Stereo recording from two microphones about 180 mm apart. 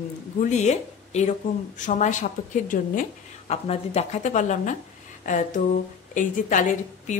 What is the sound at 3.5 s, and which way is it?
A woman's voice, 35° left (ahead or behind).